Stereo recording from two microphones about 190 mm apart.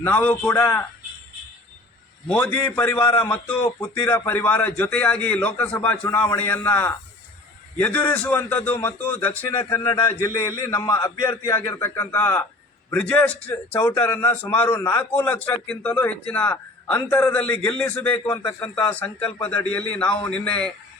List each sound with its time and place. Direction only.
0.0 s speech: 10° left (ahead or behind)
2.3 s speech: 5° left (ahead or behind)
9.5 s a man's voice: 25° left (ahead or behind); by 18.1 s 5° left (ahead or behind)
18.1 s a man's voice: 25° left (ahead or behind)
19.4 s speech: 5° left (ahead or behind)